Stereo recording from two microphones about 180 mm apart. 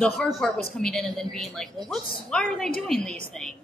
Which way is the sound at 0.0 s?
5° left (ahead or behind).